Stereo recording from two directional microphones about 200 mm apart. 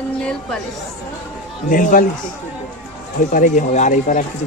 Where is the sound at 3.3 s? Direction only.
40° left (ahead or behind).